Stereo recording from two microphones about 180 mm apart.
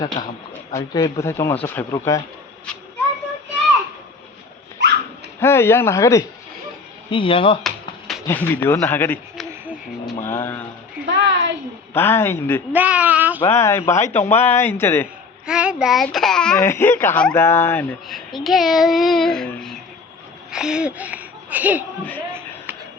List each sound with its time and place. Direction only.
0.2 s speech: 25° left (ahead or behind)
5.4 s speech: 15° left (ahead or behind)
7.1 s speech: 30° left (ahead or behind)
8.0 s speech: 5° left (ahead or behind)
10.2 s speech: 10° left (ahead or behind)
11.0 s a sound: 85° right
11.9 s speech: 15° left (ahead or behind)
12.7 s speech: 10° right (ahead or behind)
13.5 s speech: 15° left (ahead or behind)
15.4 s speech: 5° right (ahead or behind); by 17.9 s 10° left (ahead or behind)
18.1 s speech: centre (ahead or behind)
22.3 s a sound: 10° right (ahead or behind)